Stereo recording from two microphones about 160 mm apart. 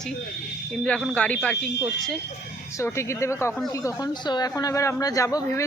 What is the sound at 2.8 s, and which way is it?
Speech, 15° left (ahead or behind).